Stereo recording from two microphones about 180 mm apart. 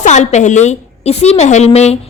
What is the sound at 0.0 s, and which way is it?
A woman's voice, 40° left (ahead or behind).